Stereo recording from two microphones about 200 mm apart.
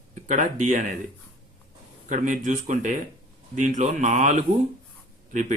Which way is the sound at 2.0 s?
40° right (ahead or behind).